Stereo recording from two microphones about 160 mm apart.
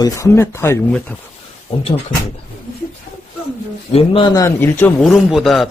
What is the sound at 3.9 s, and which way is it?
Speech, 35° left (ahead or behind).